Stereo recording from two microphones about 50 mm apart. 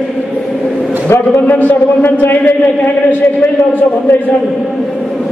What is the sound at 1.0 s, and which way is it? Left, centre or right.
Speech, left.